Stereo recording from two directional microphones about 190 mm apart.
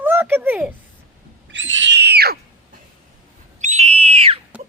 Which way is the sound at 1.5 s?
75° right (ahead or behind).